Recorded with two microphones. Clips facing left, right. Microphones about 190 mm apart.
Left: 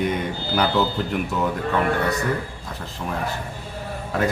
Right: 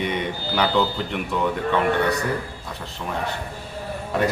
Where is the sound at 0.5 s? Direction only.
Centre (ahead or behind).